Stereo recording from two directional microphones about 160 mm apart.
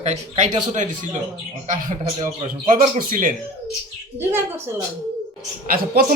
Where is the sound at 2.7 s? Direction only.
55° right (ahead or behind).